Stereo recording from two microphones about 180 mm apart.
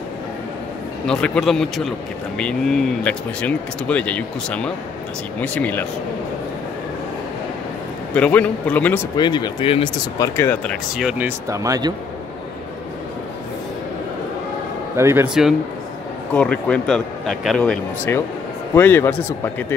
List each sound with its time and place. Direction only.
1.0 s a man's voice: 5° left (ahead or behind)
8.1 s a man's voice: 5° left (ahead or behind)
9.1 s speech: 25° left (ahead or behind)
10.1 s a man's voice: 15° left (ahead or behind)
11.0 s speech: 5° right (ahead or behind)
15.0 s speech: 15° right (ahead or behind)
15.2 s a man's voice: 5° right (ahead or behind)